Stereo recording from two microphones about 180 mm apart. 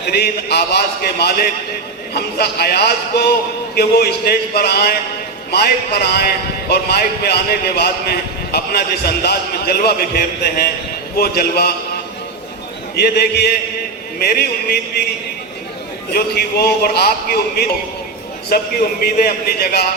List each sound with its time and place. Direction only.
0.1 s a man's voice: 65° left (ahead or behind)
13.0 s a man's voice: 60° left (ahead or behind)
16.1 s a man's voice: 60° left (ahead or behind)